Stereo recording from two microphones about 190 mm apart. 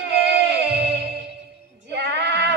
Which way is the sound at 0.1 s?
60° right (ahead or behind).